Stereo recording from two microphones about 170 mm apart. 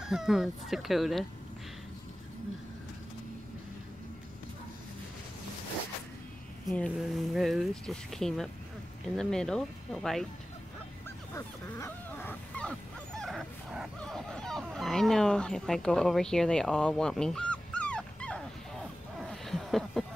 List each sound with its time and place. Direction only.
0.0 s speech: 5° right (ahead or behind)
6.7 s speech: 5° left (ahead or behind)
11.3 s goose: 15° left (ahead or behind)